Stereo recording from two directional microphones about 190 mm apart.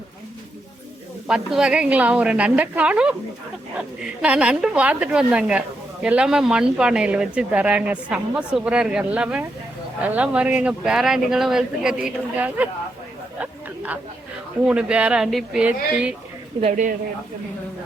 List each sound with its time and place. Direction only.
1.3 s a woman's voice: 5° right (ahead or behind)
13.4 s chatter: 5° right (ahead or behind)
14.7 s a woman's voice: 5° right (ahead or behind)
16.6 s speech: 40° right (ahead or behind)